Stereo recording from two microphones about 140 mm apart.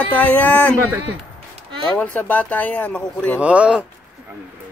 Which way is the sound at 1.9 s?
10° left (ahead or behind).